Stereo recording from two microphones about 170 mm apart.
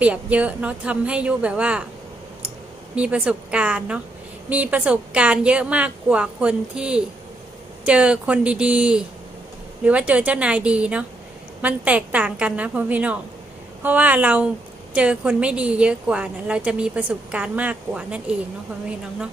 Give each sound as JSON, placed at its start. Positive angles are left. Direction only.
{"t": 0.0, "sound": "a woman's voice", "side_deg": -10}
{"t": 2.9, "sound": "a woman's voice", "side_deg": -5}